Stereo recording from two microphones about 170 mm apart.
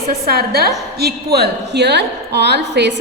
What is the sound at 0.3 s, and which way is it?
A woman's voice, 65° right (ahead or behind).